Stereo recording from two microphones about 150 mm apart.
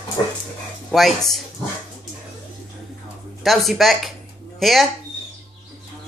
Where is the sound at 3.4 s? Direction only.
Centre (ahead or behind).